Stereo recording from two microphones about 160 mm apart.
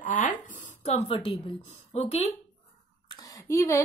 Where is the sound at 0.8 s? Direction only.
35° left (ahead or behind).